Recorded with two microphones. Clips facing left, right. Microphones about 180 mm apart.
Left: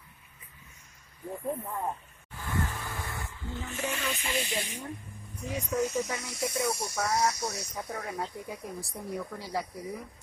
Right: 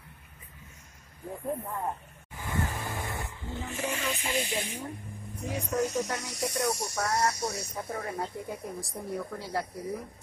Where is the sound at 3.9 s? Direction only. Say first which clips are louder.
Right 1 dB; 10° right (ahead or behind).